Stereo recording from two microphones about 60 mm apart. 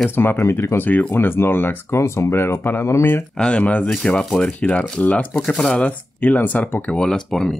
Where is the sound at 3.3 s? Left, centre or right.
Centre.